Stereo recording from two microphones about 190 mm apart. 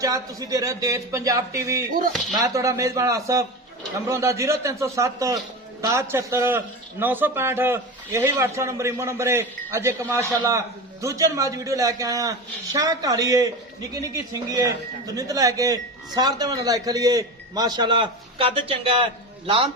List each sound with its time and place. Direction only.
0.0 s a man's voice: 15° right (ahead or behind)